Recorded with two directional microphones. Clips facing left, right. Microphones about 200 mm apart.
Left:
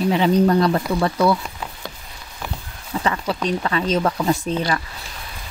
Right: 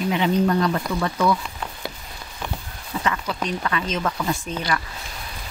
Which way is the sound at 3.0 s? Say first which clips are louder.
Left 4 dB; 30° left (ahead or behind).